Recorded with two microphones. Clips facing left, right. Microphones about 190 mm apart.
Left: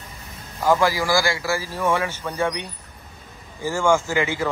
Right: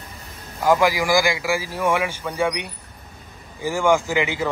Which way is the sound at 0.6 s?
15° right (ahead or behind).